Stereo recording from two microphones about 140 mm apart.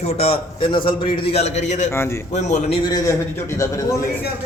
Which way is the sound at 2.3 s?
55° left (ahead or behind).